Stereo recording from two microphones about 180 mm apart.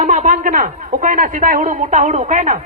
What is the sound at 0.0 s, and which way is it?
Speech, 40° right (ahead or behind).